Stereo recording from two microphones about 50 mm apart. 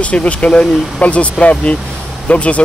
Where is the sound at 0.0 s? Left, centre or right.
Left.